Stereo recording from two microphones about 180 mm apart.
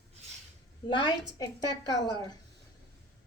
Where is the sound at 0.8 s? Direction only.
25° left (ahead or behind).